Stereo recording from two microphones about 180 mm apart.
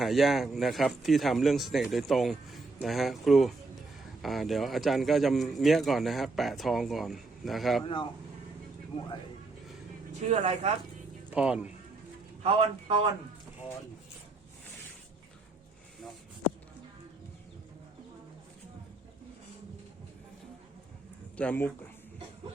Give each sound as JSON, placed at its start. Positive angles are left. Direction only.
{"t": 0.0, "sound": "a man's voice", "side_deg": 0}
{"t": 10.2, "sound": "speech", "side_deg": -35}
{"t": 11.3, "sound": "speech", "side_deg": -5}
{"t": 12.4, "sound": "a man's voice", "side_deg": -35}
{"t": 21.3, "sound": "speech", "side_deg": 10}